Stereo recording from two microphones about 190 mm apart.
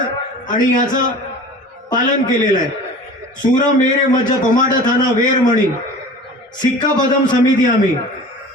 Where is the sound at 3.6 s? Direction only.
45° left (ahead or behind).